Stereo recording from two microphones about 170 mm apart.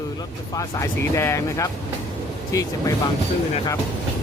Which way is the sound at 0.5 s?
15° left (ahead or behind).